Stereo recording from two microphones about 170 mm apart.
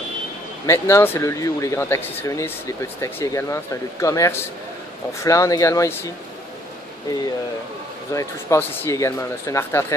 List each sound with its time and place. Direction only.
0.7 s speech: 15° left (ahead or behind)
8.1 s speech: 20° left (ahead or behind)